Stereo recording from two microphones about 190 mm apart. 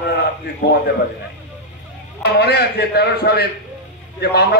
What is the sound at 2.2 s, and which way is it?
A man's voice, 60° left (ahead or behind).